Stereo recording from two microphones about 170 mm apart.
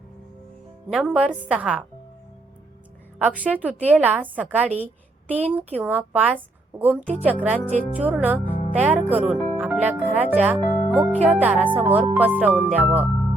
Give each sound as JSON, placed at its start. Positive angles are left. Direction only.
{"t": 0.9, "sound": "a woman's voice", "side_deg": 0}
{"t": 3.2, "sound": "a woman's voice", "side_deg": -10}